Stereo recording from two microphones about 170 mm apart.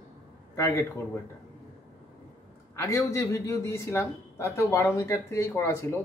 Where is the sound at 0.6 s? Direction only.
15° left (ahead or behind).